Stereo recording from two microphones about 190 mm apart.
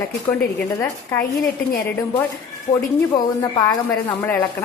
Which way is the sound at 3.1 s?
20° left (ahead or behind).